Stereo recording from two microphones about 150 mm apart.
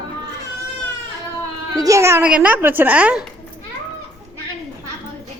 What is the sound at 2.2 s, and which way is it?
A woman's voice, 10° right (ahead or behind).